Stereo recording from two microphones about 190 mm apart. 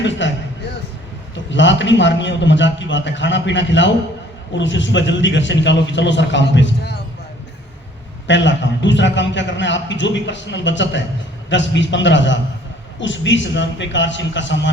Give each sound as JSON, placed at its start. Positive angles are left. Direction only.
{"t": 0.2, "sound": "a sound", "side_deg": 75}
{"t": 1.5, "sound": "a man's voice", "side_deg": 70}
{"t": 8.3, "sound": "a man's voice", "side_deg": 75}